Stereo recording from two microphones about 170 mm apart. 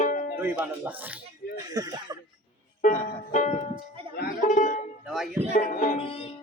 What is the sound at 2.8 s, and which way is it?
Music, 45° left (ahead or behind).